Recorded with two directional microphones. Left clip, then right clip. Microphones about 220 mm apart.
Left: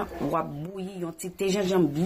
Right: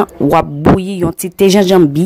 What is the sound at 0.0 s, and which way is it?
Speech, 45° right (ahead or behind).